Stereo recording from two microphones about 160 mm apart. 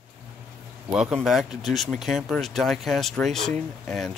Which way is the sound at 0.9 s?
Centre (ahead or behind).